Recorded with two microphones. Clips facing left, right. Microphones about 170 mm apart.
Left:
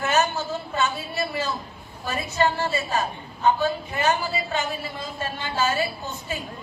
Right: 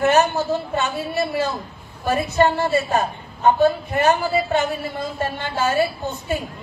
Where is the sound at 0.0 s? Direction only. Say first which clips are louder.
Right 6 dB; 60° right (ahead or behind).